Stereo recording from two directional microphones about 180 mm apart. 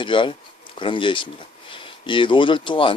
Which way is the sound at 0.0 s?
30° left (ahead or behind).